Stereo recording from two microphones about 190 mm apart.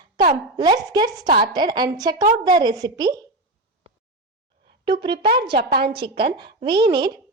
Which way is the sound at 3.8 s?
30° right (ahead or behind).